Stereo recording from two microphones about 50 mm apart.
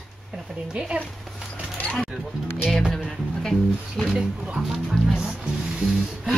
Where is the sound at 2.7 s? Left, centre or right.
Centre.